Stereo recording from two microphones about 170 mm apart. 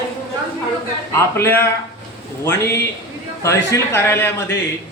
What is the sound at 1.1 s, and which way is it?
A man's voice, 15° left (ahead or behind).